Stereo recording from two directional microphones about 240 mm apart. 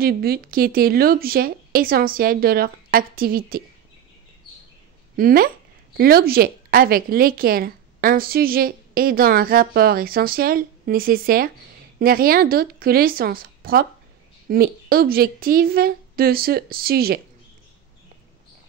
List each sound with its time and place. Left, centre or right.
0.0 s speech: right
5.1 s speech: right